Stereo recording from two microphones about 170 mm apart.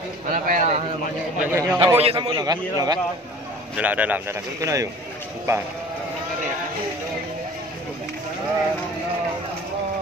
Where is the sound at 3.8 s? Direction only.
10° right (ahead or behind).